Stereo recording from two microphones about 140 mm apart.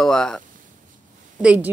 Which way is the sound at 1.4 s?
10° right (ahead or behind).